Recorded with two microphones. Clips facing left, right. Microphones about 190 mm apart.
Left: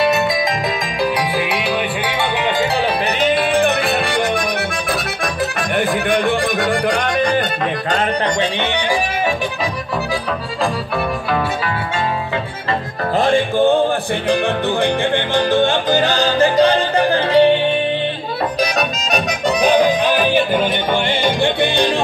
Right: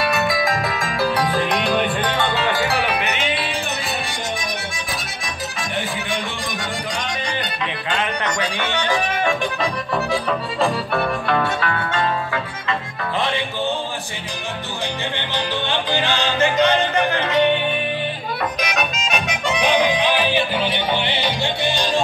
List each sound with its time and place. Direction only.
0.0 s music: 20° left (ahead or behind)
1.3 s music: 10° left (ahead or behind)
2.3 s music: 20° left (ahead or behind)
3.2 s music: 45° left (ahead or behind)
11.2 s music: 10° left (ahead or behind)
13.2 s music: 50° left (ahead or behind)
15.3 s music: 45° left (ahead or behind)
18.6 s music: 35° left (ahead or behind); by 22.0 s 55° left (ahead or behind)